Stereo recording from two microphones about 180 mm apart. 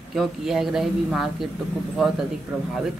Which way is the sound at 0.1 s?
Centre (ahead or behind).